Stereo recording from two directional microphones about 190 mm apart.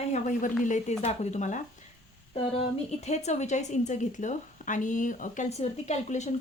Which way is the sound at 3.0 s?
35° left (ahead or behind).